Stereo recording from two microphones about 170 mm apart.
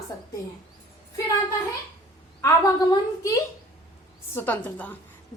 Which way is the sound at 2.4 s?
20° left (ahead or behind).